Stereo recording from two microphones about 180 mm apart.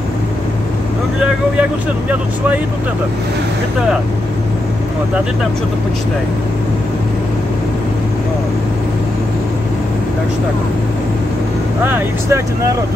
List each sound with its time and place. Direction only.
1.2 s speech: 10° right (ahead or behind)
11.8 s speech: 10° right (ahead or behind)